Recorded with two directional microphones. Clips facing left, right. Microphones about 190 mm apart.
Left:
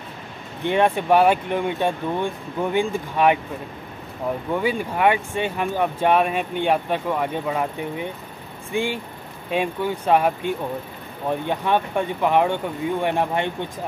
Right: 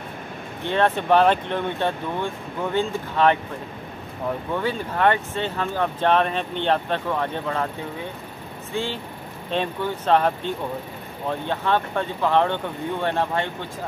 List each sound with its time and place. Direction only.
0.7 s speech: 15° left (ahead or behind)
4.6 s speech: 10° left (ahead or behind)